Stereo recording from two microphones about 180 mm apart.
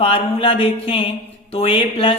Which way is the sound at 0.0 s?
30° left (ahead or behind).